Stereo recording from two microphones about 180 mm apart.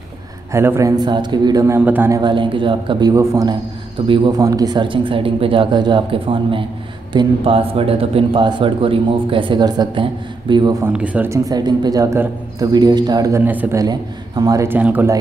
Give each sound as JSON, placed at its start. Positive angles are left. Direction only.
{"t": 0.5, "sound": "speech", "side_deg": -15}
{"t": 10.9, "sound": "speech", "side_deg": -10}